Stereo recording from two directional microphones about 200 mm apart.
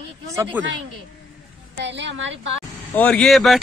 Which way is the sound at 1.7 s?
60° right (ahead or behind).